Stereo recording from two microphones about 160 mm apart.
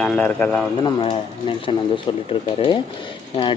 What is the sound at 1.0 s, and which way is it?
Speech, 35° left (ahead or behind).